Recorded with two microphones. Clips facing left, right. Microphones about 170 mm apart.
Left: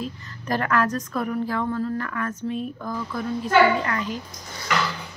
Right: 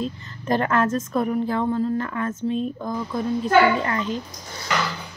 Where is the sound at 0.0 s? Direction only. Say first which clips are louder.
Right 4 dB; 25° right (ahead or behind).